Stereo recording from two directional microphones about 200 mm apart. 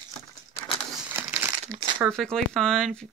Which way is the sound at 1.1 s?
10° right (ahead or behind).